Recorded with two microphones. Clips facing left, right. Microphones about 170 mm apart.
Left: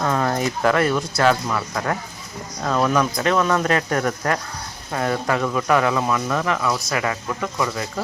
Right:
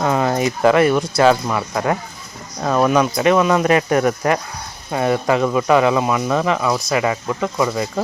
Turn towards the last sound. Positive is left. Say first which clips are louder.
# right 5 dB
turn(degrees=-20)  # may be behind; listen again after turning